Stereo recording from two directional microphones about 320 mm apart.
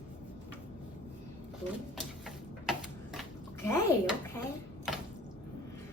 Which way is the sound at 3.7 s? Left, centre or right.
Centre.